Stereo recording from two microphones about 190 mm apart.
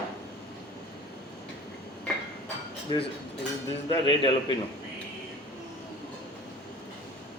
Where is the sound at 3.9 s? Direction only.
25° left (ahead or behind).